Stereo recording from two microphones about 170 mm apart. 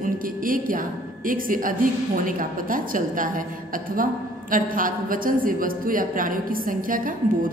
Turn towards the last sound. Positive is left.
turn(degrees=-55)  # may be behind; listen again after turning